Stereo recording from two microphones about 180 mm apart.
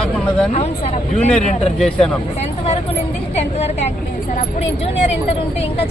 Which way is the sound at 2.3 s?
35° left (ahead or behind).